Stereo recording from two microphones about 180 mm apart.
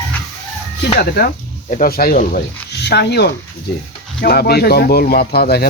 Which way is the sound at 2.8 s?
65° left (ahead or behind).